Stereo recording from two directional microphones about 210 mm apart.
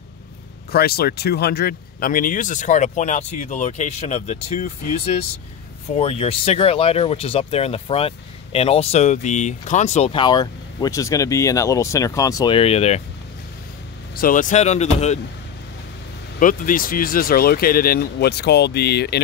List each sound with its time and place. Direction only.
0.7 s speech: 45° left (ahead or behind); by 13.0 s 30° left (ahead or behind)
14.1 s speech: 40° left (ahead or behind)
16.3 s speech: 40° left (ahead or behind)